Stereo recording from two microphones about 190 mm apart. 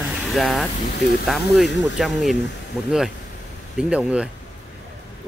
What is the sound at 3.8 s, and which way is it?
Speech, 5° right (ahead or behind).